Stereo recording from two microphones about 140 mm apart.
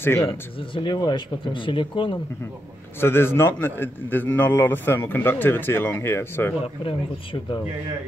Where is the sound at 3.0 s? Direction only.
15° left (ahead or behind).